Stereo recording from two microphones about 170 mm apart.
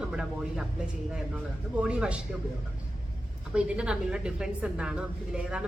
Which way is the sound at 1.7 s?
5° right (ahead or behind).